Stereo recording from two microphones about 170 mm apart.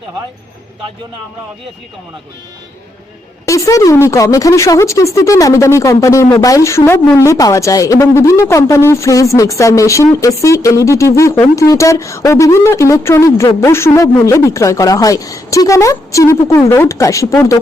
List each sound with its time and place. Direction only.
3.4 s speech: 20° left (ahead or behind)